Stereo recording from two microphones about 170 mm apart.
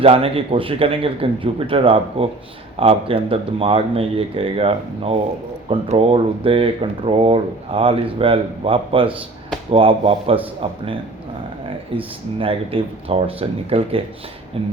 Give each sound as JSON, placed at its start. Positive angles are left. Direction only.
{"t": 0.0, "sound": "speech", "side_deg": -35}
{"t": 12.4, "sound": "speech", "side_deg": -35}